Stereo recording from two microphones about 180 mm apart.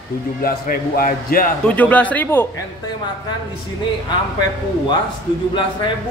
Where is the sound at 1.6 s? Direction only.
10° left (ahead or behind).